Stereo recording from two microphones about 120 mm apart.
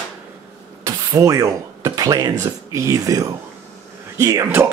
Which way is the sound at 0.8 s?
30° right (ahead or behind).